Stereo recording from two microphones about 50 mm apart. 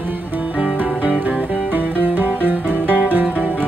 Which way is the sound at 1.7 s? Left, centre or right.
Right.